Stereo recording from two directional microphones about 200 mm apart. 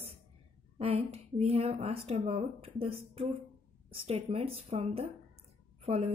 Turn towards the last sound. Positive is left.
turn(degrees=-30)  # may be behind; listen again after turning